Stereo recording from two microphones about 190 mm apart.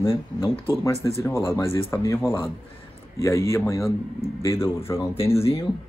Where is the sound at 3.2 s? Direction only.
15° left (ahead or behind).